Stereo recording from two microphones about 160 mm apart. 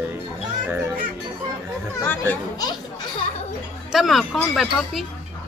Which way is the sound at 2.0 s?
10° left (ahead or behind).